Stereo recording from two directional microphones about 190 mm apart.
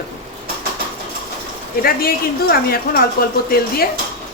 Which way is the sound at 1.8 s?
50° left (ahead or behind).